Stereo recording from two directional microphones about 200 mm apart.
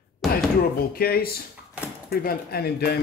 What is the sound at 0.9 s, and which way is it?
Speech, 50° left (ahead or behind).